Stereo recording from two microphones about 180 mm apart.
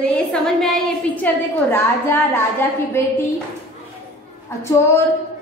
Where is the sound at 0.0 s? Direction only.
5° left (ahead or behind).